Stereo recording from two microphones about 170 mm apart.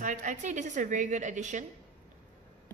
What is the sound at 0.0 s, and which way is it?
Speech, 45° right (ahead or behind).